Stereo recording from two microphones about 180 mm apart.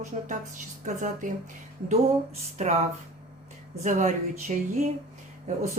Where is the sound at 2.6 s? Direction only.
40° right (ahead or behind).